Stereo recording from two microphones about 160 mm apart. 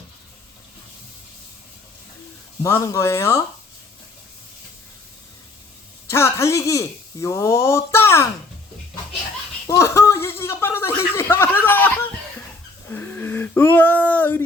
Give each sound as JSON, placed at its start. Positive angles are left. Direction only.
{"t": 2.6, "sound": "speech", "side_deg": 15}
{"t": 6.1, "sound": "speech", "side_deg": 15}
{"t": 9.6, "sound": "a sound", "side_deg": 15}
{"t": 12.9, "sound": "speech", "side_deg": 15}